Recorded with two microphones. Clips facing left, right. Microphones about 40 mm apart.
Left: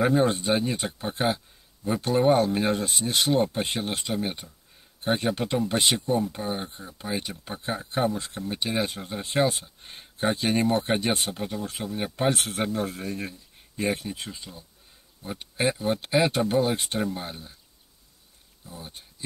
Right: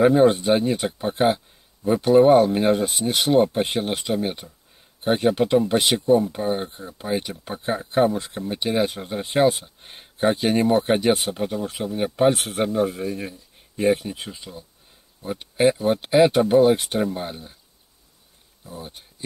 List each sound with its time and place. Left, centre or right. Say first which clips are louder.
0.0 s speech: right 7 dB; centre
18.7 s speech: right 5 dB; centre